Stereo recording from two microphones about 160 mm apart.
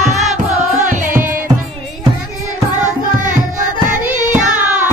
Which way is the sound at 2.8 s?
55° right (ahead or behind).